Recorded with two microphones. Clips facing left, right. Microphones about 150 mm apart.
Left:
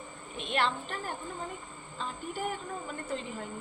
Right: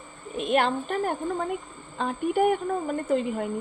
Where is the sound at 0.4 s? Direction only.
50° right (ahead or behind).